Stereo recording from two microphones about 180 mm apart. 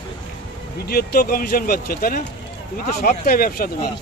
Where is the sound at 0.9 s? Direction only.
60° left (ahead or behind).